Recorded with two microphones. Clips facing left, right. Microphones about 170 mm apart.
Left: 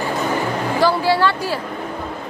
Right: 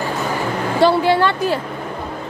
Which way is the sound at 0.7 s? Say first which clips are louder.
Right 3 dB; 25° right (ahead or behind).